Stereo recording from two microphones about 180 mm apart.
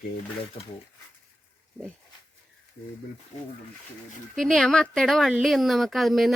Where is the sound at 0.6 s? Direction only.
35° left (ahead or behind).